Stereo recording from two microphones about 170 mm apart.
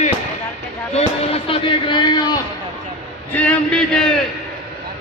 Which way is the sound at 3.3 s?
5° left (ahead or behind).